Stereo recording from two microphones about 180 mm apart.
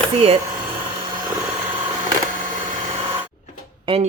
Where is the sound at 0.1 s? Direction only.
35° right (ahead or behind).